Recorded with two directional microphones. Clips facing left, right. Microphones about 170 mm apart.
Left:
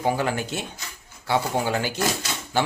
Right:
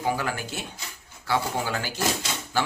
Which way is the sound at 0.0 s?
25° left (ahead or behind).